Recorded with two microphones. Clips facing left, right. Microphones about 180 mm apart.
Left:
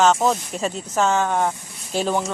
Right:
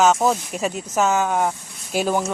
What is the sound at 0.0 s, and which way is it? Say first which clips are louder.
Speech: even; 5° right (ahead or behind).